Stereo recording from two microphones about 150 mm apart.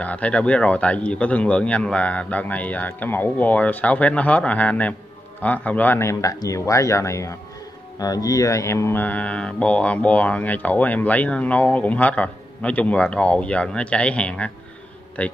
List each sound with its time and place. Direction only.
0.0 s speech: 10° left (ahead or behind)